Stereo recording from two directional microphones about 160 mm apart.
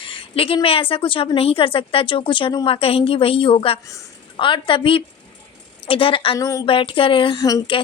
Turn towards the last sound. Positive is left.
turn(degrees=25)  # may be behind; listen again after turning